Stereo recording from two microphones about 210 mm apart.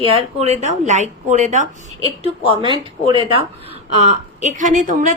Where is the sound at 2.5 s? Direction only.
25° right (ahead or behind).